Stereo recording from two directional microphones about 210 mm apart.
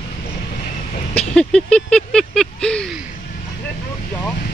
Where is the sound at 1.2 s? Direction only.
5° left (ahead or behind).